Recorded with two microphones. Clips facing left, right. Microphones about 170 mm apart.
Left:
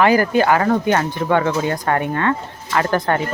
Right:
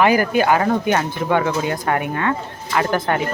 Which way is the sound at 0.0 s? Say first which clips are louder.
Left 1 dB; 15° right (ahead or behind).